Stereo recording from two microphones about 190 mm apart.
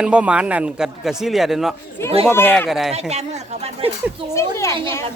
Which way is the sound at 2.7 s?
Centre (ahead or behind).